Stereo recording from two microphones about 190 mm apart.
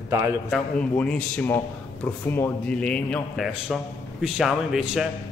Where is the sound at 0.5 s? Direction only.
5° left (ahead or behind).